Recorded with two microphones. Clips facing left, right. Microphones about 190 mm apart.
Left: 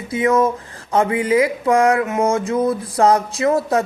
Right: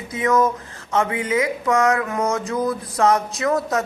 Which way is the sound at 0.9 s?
30° left (ahead or behind).